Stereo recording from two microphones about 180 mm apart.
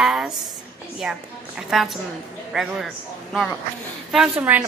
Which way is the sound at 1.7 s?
Centre (ahead or behind).